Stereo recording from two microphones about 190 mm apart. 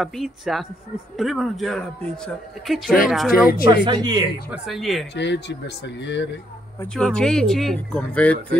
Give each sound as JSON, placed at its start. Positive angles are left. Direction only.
{"t": 0.0, "sound": "speech", "side_deg": 0}
{"t": 3.7, "sound": "speech", "side_deg": -25}
{"t": 4.5, "sound": "speech", "side_deg": 0}
{"t": 5.1, "sound": "speech", "side_deg": 65}
{"t": 6.8, "sound": "speech", "side_deg": 5}